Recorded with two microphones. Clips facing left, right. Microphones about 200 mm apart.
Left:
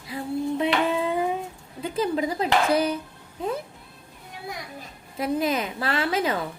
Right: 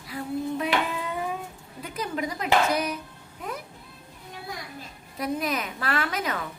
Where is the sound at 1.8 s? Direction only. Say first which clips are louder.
Left 6 dB; 30° left (ahead or behind).